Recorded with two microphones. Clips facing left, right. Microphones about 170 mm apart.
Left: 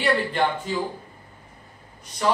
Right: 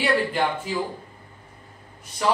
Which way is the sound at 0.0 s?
5° right (ahead or behind).